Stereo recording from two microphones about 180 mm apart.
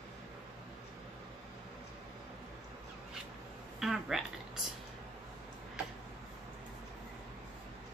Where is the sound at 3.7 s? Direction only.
Centre (ahead or behind).